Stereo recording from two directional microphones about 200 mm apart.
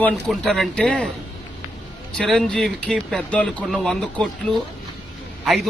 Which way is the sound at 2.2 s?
Centre (ahead or behind).